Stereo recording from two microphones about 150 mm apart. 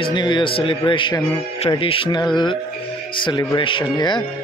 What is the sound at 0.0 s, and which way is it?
A man's voice, 30° left (ahead or behind).